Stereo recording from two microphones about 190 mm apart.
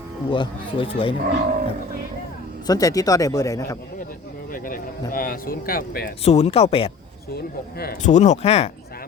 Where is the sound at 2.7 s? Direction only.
20° left (ahead or behind).